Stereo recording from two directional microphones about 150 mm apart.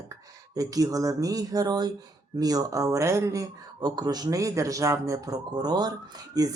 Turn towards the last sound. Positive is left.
turn(degrees=-25)  # may be behind; listen again after turning